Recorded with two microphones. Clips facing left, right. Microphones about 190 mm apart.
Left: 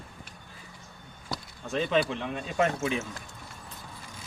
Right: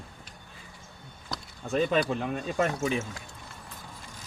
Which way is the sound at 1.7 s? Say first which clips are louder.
Right 1 dB; 40° right (ahead or behind).